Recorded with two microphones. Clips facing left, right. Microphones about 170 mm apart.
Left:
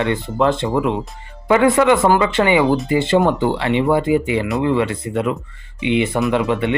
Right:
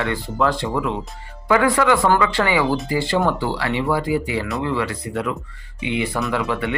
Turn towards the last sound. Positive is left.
turn(degrees=25)  # may be behind; listen again after turning